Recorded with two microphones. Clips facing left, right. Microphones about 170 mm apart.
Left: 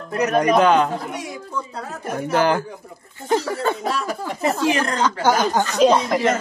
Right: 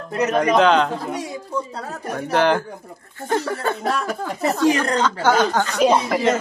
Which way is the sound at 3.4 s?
55° right (ahead or behind).